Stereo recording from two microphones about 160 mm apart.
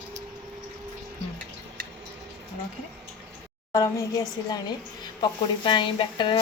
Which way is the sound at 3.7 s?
20° left (ahead or behind).